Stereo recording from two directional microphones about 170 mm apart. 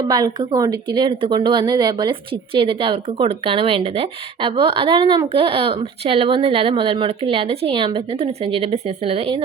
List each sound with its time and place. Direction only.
0.0 s a woman's voice: 25° right (ahead or behind)